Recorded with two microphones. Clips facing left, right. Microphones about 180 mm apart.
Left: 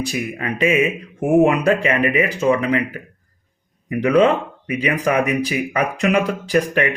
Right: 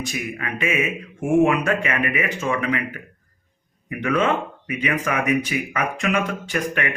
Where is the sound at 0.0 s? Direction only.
35° left (ahead or behind).